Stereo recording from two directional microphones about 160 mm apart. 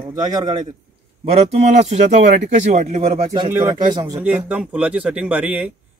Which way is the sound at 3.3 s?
25° right (ahead or behind).